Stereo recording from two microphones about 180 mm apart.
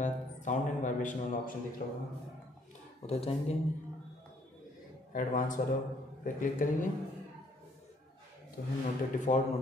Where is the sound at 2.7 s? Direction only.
35° left (ahead or behind).